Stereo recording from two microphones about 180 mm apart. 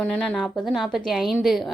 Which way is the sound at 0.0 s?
Centre (ahead or behind).